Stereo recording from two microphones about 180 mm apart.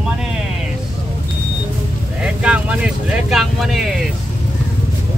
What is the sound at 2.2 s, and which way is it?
Speech, 5° right (ahead or behind).